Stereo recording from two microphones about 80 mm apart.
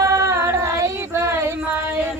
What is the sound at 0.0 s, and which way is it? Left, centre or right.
Female singing, right.